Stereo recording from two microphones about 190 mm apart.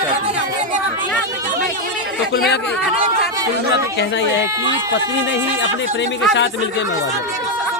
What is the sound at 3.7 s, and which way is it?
Speech, 65° left (ahead or behind).